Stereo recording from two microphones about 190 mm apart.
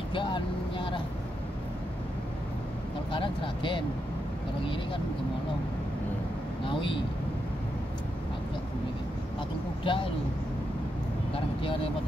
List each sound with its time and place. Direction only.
0.1 s vehicle: 25° left (ahead or behind)
3.1 s speech: 25° left (ahead or behind)
6.6 s speech: 25° left (ahead or behind)
9.8 s speech: 30° left (ahead or behind)
11.3 s speech: 30° left (ahead or behind)